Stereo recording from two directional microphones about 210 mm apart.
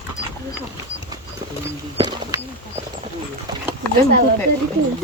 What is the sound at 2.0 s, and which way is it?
Bird, 20° right (ahead or behind).